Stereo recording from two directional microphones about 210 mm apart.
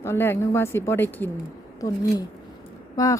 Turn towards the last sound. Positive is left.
turn(degrees=15)  # may be behind; listen again after turning